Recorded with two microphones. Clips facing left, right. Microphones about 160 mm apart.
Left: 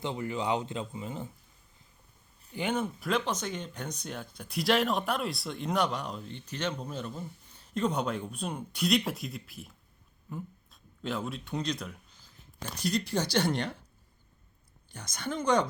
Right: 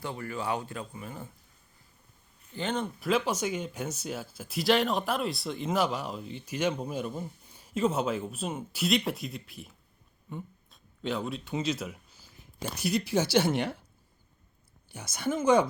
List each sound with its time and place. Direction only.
0.0 s speech: 20° left (ahead or behind)
2.5 s speech: 10° left (ahead or behind); by 13.7 s 5° right (ahead or behind)
14.8 s speech: 10° right (ahead or behind)